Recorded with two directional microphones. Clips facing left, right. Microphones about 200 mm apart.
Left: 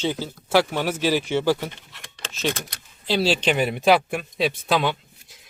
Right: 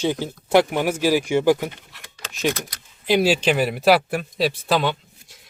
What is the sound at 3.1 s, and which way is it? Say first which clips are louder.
A man's voice: right 3 dB; 15° right (ahead or behind).